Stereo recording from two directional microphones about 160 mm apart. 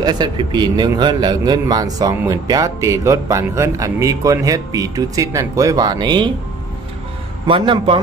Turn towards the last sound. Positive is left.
turn(degrees=-35)  # may be behind; listen again after turning